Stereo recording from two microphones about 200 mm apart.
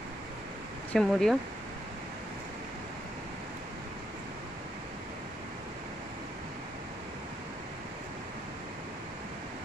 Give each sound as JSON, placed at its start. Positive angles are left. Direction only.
{"t": 0.9, "sound": "speech", "side_deg": 0}